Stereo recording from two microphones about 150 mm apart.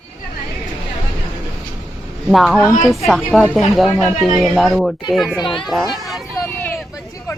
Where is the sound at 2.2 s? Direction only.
Centre (ahead or behind).